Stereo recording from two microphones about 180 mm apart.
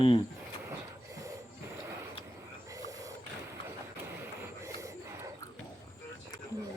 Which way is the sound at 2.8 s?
20° right (ahead or behind).